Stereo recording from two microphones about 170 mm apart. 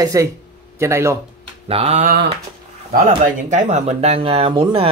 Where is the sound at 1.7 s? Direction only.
35° right (ahead or behind).